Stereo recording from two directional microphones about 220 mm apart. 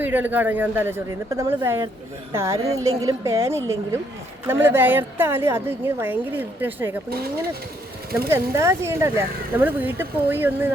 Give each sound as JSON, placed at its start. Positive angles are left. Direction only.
{"t": 0.0, "sound": "a woman's voice", "side_deg": -10}
{"t": 8.3, "sound": "a woman's voice", "side_deg": -10}